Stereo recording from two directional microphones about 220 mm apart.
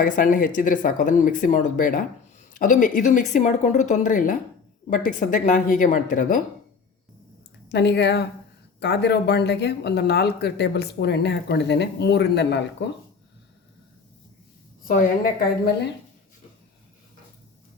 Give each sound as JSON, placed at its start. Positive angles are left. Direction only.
{"t": 0.0, "sound": "speech", "side_deg": 40}
{"t": 7.7, "sound": "speech", "side_deg": 50}
{"t": 14.8, "sound": "speech", "side_deg": 40}